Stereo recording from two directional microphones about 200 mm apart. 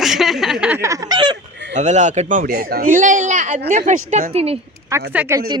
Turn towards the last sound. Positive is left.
turn(degrees=-5)  # may be behind; listen again after turning